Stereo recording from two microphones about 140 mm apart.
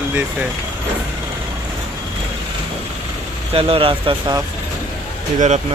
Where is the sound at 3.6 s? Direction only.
40° right (ahead or behind).